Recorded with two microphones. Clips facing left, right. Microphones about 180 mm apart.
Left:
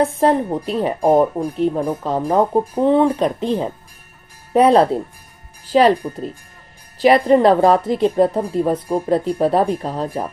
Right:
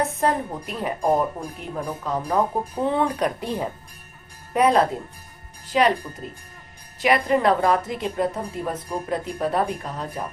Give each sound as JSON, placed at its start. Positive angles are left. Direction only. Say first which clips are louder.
{"t": 0.0, "sound": "a woman's voice", "louder": "left 7 dB", "side_deg": 30}
{"t": 7.0, "sound": "a woman's voice", "louder": "left 7 dB", "side_deg": 30}